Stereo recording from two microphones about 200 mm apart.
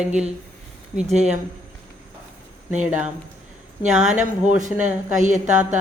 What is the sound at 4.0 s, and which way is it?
Speech, 35° right (ahead or behind).